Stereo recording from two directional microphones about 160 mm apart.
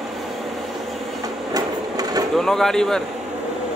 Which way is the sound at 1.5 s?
25° right (ahead or behind).